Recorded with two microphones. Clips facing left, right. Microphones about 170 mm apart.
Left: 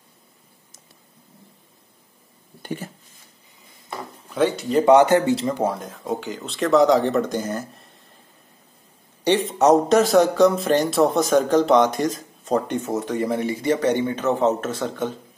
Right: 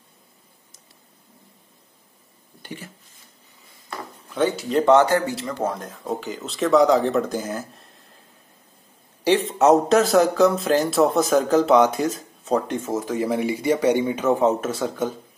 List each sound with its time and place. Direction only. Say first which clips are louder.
2.6 s a sound: left 6 dB; 45° left (ahead or behind)
4.4 s speech: left 1 dB; centre (ahead or behind)
4.8 s speech: left 3 dB; 15° left (ahead or behind)
5.6 s speech: left 2 dB; 5° left (ahead or behind)
9.2 s speech: even; centre (ahead or behind)